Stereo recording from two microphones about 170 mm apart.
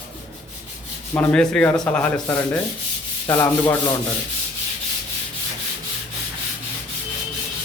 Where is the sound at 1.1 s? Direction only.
10° left (ahead or behind).